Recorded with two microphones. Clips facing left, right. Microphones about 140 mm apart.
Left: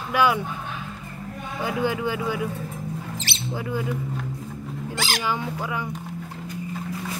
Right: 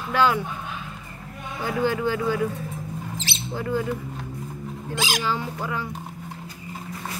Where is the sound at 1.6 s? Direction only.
15° left (ahead or behind).